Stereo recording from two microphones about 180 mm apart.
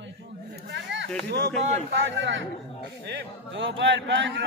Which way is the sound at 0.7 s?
80° right.